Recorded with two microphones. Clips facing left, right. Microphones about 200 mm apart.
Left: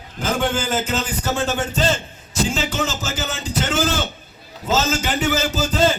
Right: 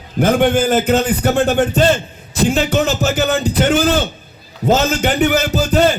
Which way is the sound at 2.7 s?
60° right (ahead or behind).